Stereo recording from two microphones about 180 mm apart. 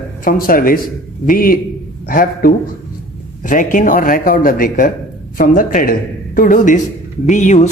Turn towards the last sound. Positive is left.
turn(degrees=40)  # may be behind; listen again after turning